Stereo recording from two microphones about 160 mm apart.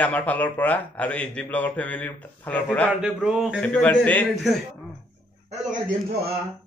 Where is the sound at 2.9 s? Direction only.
5° right (ahead or behind).